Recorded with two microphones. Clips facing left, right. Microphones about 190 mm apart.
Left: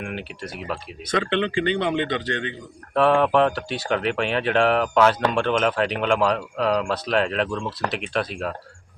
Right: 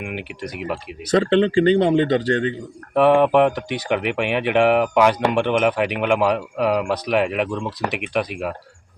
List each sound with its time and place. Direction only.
0.0 s speech: 15° right (ahead or behind)
1.1 s speech: 40° right (ahead or behind)
2.9 s speech: 15° right (ahead or behind)